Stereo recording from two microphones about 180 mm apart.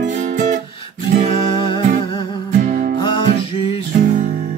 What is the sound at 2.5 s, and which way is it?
Music, 45° right (ahead or behind).